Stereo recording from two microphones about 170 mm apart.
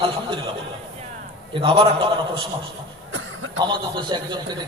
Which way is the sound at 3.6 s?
25° right (ahead or behind).